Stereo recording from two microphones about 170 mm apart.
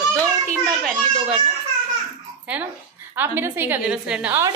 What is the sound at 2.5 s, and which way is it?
A woman's voice, 5° right (ahead or behind).